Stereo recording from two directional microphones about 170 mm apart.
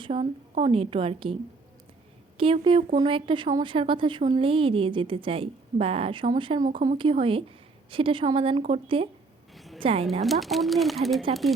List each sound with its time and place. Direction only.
0.0 s speech: 35° right (ahead or behind)
2.4 s speech: 30° right (ahead or behind)
9.6 s a sound: centre (ahead or behind)
9.8 s speech: 35° right (ahead or behind)
10.2 s speech: centre (ahead or behind)